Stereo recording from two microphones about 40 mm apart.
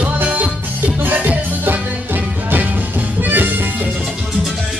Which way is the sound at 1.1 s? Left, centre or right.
Right.